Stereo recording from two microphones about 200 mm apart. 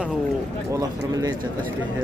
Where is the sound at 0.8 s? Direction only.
15° right (ahead or behind).